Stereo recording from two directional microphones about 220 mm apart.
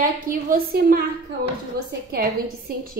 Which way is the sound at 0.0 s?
40° right (ahead or behind).